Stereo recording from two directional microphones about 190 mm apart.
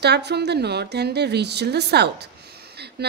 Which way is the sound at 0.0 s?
60° right (ahead or behind).